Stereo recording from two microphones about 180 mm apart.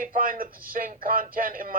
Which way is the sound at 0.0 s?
50° right (ahead or behind).